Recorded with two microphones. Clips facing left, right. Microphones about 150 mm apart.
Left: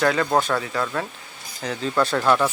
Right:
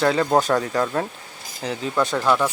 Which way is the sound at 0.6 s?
40° right (ahead or behind).